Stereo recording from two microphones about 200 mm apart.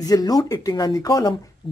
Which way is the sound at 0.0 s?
20° left (ahead or behind).